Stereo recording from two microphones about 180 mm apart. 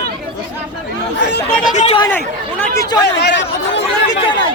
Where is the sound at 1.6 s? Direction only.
40° left (ahead or behind).